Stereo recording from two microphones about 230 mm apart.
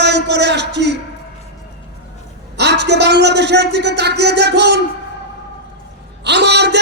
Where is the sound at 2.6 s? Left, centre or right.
Right.